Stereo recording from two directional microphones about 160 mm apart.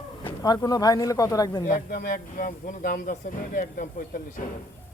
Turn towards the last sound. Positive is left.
turn(degrees=55)  # may be behind; listen again after turning